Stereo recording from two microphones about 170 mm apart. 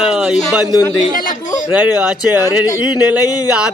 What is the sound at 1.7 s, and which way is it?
Speech, 10° right (ahead or behind).